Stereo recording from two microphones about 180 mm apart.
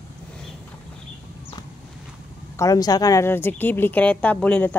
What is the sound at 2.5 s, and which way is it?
Speech, 20° left (ahead or behind).